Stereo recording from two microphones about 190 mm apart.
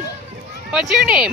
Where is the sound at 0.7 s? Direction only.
5° right (ahead or behind).